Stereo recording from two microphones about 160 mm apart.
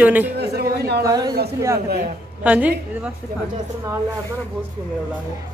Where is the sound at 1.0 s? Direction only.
25° right (ahead or behind).